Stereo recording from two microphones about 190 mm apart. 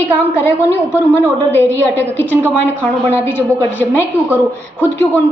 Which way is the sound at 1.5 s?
10° left (ahead or behind).